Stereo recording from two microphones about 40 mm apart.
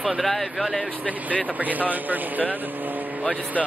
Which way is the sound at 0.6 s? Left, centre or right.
Right.